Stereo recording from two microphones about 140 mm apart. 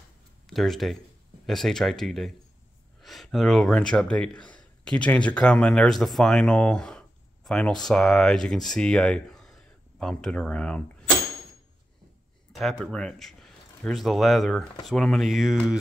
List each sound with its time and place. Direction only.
0.5 s speech: centre (ahead or behind)
12.5 s speech: 5° left (ahead or behind)